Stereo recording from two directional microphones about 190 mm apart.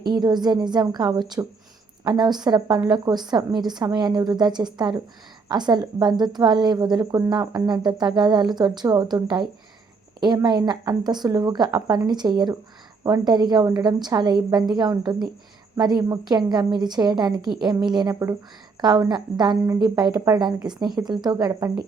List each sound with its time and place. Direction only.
0.0 s a woman's voice: 20° right (ahead or behind)